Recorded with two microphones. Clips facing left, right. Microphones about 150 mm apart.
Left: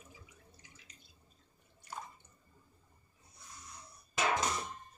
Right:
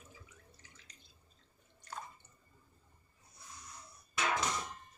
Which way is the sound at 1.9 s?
10° left (ahead or behind).